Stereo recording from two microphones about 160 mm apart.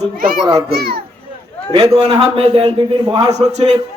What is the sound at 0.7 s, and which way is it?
Speech, 85° right.